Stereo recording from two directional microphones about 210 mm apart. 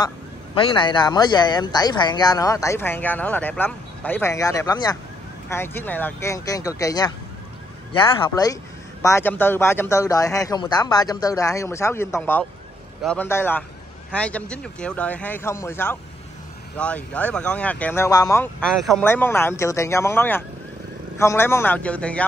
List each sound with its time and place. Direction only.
0.6 s speech: 20° left (ahead or behind); by 22.2 s 5° left (ahead or behind)